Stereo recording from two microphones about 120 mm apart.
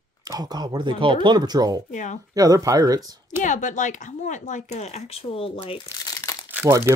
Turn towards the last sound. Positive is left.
turn(degrees=-20)  # may be behind; listen again after turning